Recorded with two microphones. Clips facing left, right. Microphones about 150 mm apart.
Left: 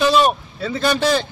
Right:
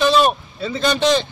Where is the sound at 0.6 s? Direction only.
15° right (ahead or behind).